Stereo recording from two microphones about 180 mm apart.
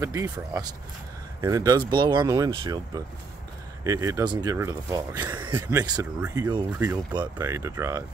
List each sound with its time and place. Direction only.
0.0 s speech: 15° right (ahead or behind)